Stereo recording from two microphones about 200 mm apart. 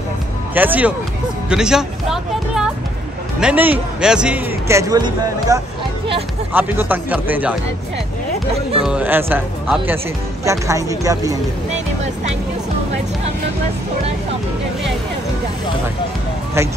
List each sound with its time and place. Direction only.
0.6 s speech: 10° right (ahead or behind)
1.5 s music: 5° right (ahead or behind)
3.3 s speech: 5° right (ahead or behind)
8.7 s speech: 5° right (ahead or behind)